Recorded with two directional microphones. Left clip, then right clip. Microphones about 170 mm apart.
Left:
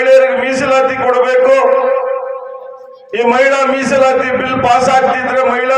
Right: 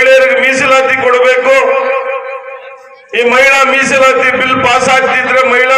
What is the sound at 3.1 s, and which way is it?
A man's voice, 35° left (ahead or behind).